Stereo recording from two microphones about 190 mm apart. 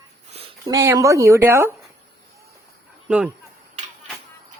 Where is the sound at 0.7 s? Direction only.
15° right (ahead or behind).